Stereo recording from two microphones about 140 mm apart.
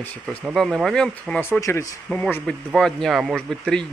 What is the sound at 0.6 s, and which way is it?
Speech, centre (ahead or behind).